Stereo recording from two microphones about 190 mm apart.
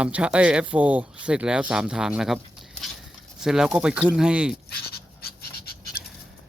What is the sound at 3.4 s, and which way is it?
Speech, 5° right (ahead or behind).